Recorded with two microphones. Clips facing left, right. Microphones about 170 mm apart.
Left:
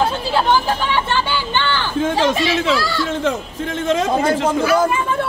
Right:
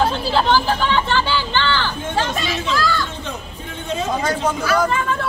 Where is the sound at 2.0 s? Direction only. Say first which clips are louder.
Left 6 dB; 90° left.